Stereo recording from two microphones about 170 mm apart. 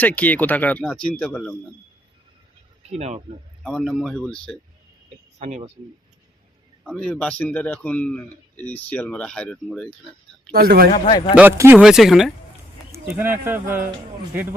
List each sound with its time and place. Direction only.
0.0 s speech: 10° left (ahead or behind)
2.9 s speech: 40° right (ahead or behind)
3.6 s speech: centre (ahead or behind)
5.4 s speech: 40° right (ahead or behind)
6.8 s speech: centre (ahead or behind)
10.5 s speech: 65° right (ahead or behind)
10.9 s speech: 30° left (ahead or behind)
11.3 s speech: 15° right (ahead or behind)
11.8 s speech: centre (ahead or behind)
12.9 s speech: 15° right (ahead or behind)